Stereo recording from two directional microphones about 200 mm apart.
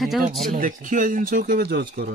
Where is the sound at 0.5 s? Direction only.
45° right (ahead or behind).